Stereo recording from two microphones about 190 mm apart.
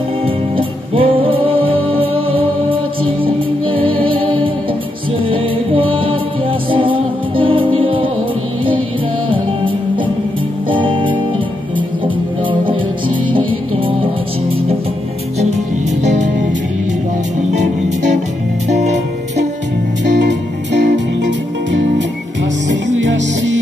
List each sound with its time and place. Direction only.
0.2 s music: 30° right (ahead or behind)
10.7 s music: 25° right (ahead or behind)
16.0 s music: 40° right (ahead or behind)
20.1 s music: 65° right (ahead or behind)